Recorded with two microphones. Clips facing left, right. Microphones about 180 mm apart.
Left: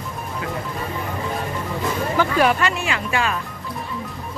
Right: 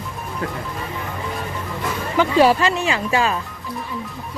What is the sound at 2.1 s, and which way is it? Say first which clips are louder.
Speech: right 5 dB; 20° right (ahead or behind).